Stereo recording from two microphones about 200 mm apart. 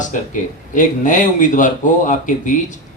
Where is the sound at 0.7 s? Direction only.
40° left (ahead or behind).